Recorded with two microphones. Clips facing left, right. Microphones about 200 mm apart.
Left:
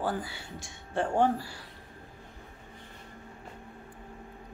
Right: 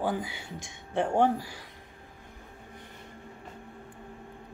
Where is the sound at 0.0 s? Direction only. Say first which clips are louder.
Right 2 dB; 15° right (ahead or behind).